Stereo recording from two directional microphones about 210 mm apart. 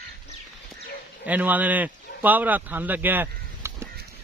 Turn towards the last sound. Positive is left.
turn(degrees=-10)  # may be behind; listen again after turning